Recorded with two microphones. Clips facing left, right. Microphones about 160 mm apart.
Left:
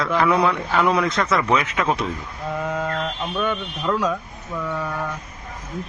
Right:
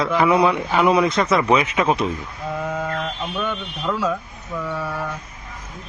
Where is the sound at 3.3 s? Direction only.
Centre (ahead or behind).